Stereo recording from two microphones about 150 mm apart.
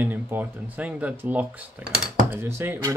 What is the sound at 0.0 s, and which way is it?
Speech, 10° right (ahead or behind).